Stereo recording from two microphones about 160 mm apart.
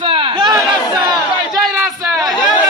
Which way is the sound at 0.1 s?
30° right (ahead or behind).